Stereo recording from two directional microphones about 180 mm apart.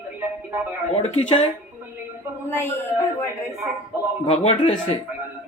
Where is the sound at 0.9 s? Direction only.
35° left (ahead or behind).